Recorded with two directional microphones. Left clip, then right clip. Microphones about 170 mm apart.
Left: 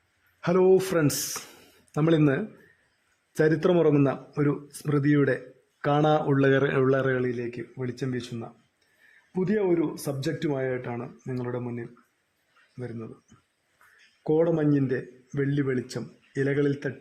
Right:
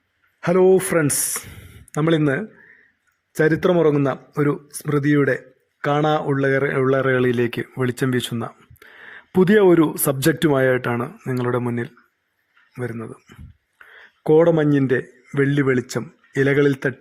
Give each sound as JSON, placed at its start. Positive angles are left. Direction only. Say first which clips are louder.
{"t": 0.4, "sound": "a man's voice", "louder": "right 5 dB", "side_deg": -20}
{"t": 1.9, "sound": "speech", "louder": "right 4 dB", "side_deg": -5}
{"t": 7.3, "sound": "speech", "louder": "right 11 dB", "side_deg": -50}
{"t": 7.9, "sound": "speech", "louder": "right 10 dB", "side_deg": -35}
{"t": 9.5, "sound": "a man's voice", "louder": "right 10 dB", "side_deg": -40}